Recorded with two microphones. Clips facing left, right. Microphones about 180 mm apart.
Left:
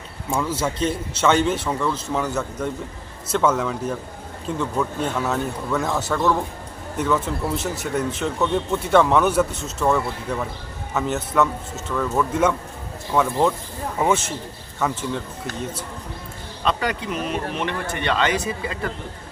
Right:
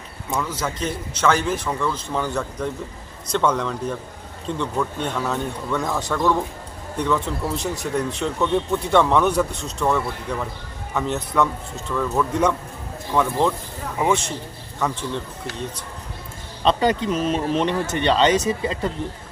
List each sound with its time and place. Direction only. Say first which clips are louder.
0.8 s a man's voice: left 2 dB; 25° left (ahead or behind)
1.6 s a man's voice: left 1 dB; 5° left (ahead or behind)
16.6 s speech: right 5 dB; 25° right (ahead or behind)